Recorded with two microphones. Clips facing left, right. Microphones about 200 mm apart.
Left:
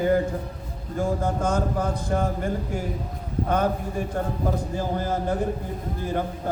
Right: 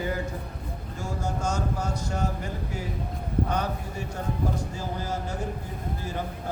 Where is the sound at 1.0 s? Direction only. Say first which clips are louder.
Left 7 dB; 55° left (ahead or behind).